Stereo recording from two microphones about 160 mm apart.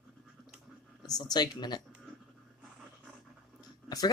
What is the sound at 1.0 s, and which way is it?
Speech, 25° left (ahead or behind).